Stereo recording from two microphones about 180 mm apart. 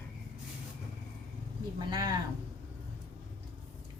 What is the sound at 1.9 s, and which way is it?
Speech, 20° right (ahead or behind).